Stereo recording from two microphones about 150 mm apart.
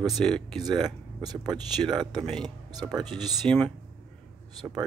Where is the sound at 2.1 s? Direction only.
5° left (ahead or behind).